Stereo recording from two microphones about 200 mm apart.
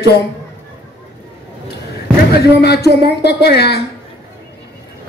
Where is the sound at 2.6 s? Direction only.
55° left (ahead or behind).